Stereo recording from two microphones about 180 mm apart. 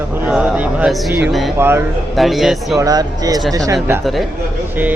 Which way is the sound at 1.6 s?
15° right (ahead or behind).